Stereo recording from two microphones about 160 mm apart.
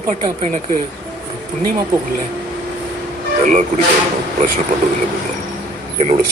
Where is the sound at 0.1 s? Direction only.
45° right (ahead or behind).